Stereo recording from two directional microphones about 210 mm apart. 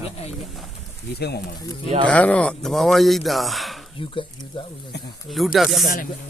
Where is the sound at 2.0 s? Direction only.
5° left (ahead or behind).